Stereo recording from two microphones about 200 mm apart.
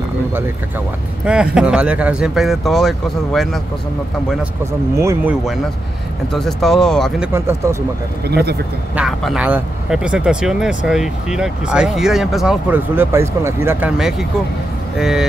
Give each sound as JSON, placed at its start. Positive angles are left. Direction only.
{"t": 1.2, "sound": "speech", "side_deg": -5}
{"t": 4.9, "sound": "speech", "side_deg": -15}
{"t": 6.3, "sound": "speech", "side_deg": 0}
{"t": 7.3, "sound": "speech", "side_deg": -10}
{"t": 8.3, "sound": "speech", "side_deg": -55}
{"t": 8.9, "sound": "speech", "side_deg": 0}